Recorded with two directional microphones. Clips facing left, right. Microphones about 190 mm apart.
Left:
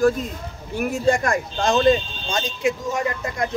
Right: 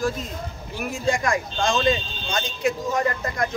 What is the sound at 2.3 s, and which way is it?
A man's voice, 20° left (ahead or behind).